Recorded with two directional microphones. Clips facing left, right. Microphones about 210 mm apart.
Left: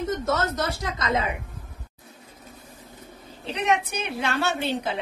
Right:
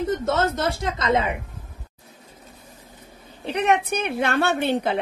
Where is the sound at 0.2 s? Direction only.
25° right (ahead or behind).